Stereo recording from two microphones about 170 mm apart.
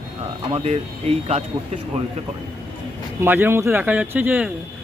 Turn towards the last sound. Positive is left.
turn(degrees=-10)  # may be behind; listen again after turning